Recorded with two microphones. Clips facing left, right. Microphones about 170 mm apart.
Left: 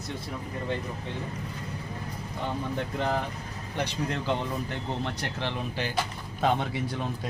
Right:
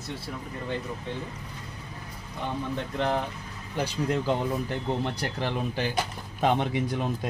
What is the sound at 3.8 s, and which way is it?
Speech, 5° right (ahead or behind).